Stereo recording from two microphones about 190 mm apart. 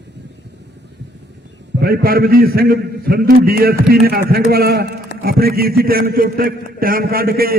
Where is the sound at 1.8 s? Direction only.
55° right (ahead or behind).